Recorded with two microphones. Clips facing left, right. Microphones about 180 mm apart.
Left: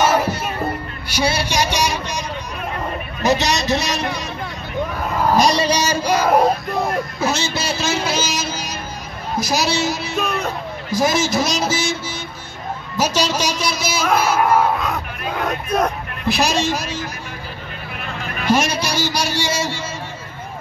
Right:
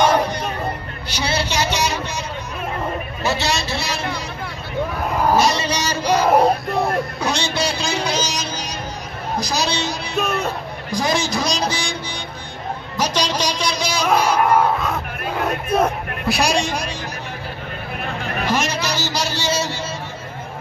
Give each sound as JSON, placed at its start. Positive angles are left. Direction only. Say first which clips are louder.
{"t": 0.0, "sound": "music", "louder": "even", "side_deg": 5}
{"t": 1.1, "sound": "speech", "louder": "left 3 dB", "side_deg": 10}
{"t": 3.3, "sound": "a man's voice", "louder": "left 5 dB", "side_deg": 20}
{"t": 5.3, "sound": "speech", "louder": "left 4 dB", "side_deg": 15}
{"t": 6.2, "sound": "speech", "louder": "right 1 dB", "side_deg": 0}
{"t": 18.5, "sound": "music", "louder": "left 5 dB", "side_deg": 10}